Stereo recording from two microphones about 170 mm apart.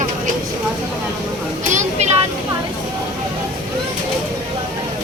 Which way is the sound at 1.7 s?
45° right (ahead or behind).